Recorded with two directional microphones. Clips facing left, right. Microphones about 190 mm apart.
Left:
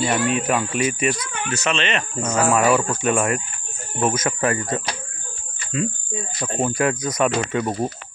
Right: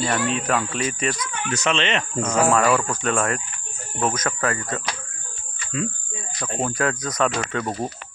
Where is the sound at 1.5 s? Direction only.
15° right (ahead or behind).